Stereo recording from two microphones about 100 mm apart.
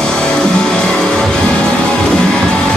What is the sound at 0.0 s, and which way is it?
Music, 5° left (ahead or behind).